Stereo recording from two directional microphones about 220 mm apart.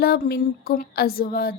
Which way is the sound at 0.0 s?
45° left (ahead or behind).